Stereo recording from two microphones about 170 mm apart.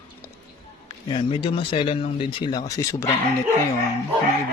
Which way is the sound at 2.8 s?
15° left (ahead or behind).